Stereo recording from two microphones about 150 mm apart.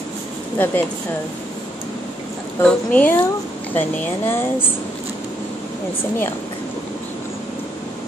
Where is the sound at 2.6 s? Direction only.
10° left (ahead or behind).